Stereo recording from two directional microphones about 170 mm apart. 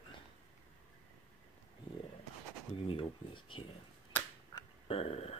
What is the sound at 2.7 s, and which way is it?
Speech, 30° left (ahead or behind).